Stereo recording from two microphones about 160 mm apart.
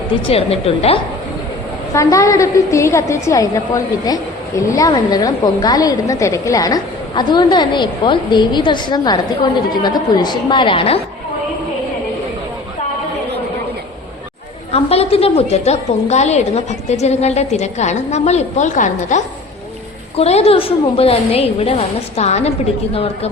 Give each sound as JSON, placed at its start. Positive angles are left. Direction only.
{"t": 0.3, "sound": "a woman's voice", "side_deg": 40}
{"t": 1.9, "sound": "a woman's voice", "side_deg": 20}
{"t": 14.7, "sound": "a woman's voice", "side_deg": 40}